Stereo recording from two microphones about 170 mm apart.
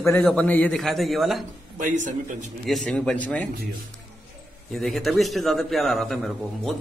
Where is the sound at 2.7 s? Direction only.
Centre (ahead or behind).